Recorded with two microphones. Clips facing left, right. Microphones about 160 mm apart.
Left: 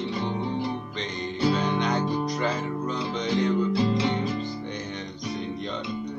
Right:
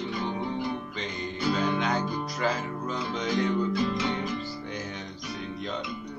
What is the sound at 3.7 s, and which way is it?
Music, 35° left (ahead or behind).